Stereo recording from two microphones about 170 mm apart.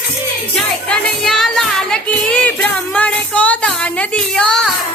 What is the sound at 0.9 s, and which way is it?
Music, 5° left (ahead or behind).